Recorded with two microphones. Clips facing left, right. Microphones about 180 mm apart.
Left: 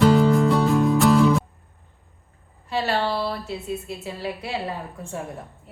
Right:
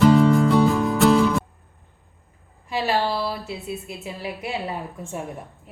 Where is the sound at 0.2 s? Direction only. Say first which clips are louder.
Right 2 dB; centre (ahead or behind).